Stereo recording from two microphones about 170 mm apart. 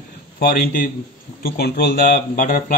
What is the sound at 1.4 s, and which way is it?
Speech, 65° left (ahead or behind).